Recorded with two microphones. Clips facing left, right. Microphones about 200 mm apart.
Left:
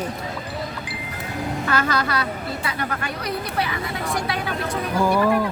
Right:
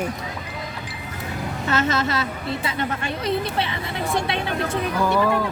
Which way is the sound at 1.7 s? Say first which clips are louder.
Right 2 dB; 25° right (ahead or behind).